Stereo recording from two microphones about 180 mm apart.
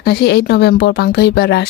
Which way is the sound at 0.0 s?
65° left (ahead or behind).